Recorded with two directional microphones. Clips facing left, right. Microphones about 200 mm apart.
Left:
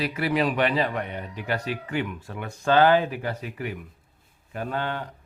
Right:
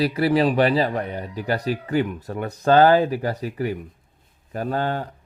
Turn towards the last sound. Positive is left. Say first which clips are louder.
# right 5 dB
turn(degrees=-40)  # may be behind; listen again after turning